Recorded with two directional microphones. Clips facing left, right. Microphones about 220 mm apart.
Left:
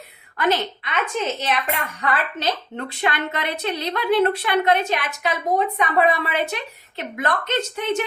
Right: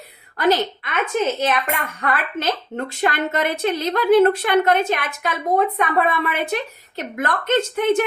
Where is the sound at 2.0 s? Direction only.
50° right (ahead or behind).